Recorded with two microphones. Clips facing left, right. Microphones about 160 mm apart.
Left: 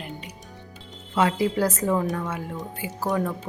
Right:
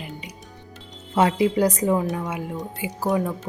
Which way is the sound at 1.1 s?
25° right (ahead or behind).